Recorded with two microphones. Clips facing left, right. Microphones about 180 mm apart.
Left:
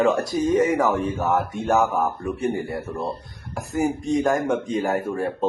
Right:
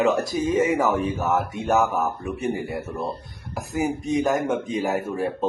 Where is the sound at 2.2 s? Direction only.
20° right (ahead or behind).